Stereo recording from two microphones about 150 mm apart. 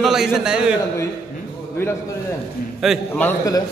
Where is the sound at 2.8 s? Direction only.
Centre (ahead or behind).